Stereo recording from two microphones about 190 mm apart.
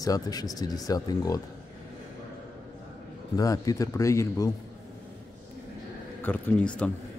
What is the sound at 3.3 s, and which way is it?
Speech, 20° left (ahead or behind).